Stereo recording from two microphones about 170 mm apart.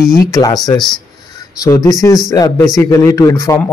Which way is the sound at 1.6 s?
20° left (ahead or behind).